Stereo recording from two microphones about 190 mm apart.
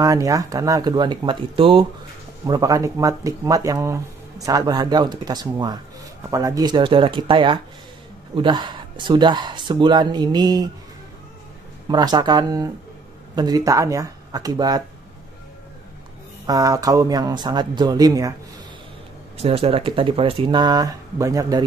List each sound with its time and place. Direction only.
0.0 s speech: 15° right (ahead or behind)
11.9 s speech: 20° right (ahead or behind)
16.4 s speech: 20° right (ahead or behind)
19.3 s speech: 30° right (ahead or behind)